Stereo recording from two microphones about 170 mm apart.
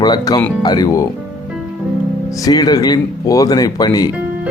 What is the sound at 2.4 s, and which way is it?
Speech, 20° left (ahead or behind).